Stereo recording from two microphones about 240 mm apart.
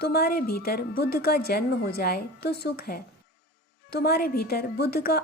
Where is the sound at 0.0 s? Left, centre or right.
Left.